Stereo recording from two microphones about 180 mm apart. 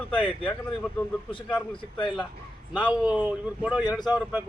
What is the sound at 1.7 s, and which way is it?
A man's voice, 30° left (ahead or behind).